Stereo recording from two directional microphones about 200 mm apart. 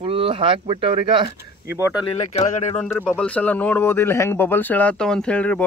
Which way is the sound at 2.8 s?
10° left (ahead or behind).